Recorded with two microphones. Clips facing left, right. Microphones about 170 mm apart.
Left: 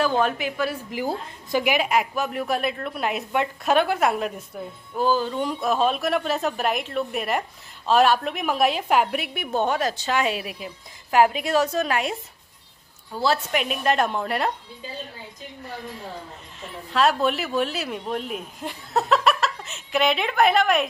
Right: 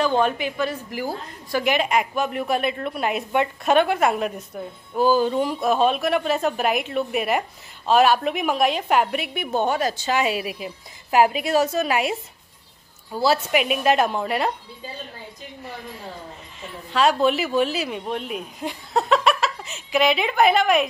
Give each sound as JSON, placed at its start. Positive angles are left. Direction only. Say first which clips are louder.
{"t": 0.0, "sound": "a woman's voice", "louder": "right 1 dB", "side_deg": 5}
{"t": 0.9, "sound": "a woman's voice", "louder": "left 1 dB", "side_deg": 20}
{"t": 1.7, "sound": "a woman's voice", "louder": "right 2 dB", "side_deg": 5}
{"t": 16.9, "sound": "a woman's voice", "louder": "right 2 dB", "side_deg": 0}